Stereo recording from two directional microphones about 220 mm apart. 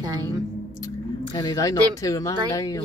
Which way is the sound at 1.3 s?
15° left (ahead or behind).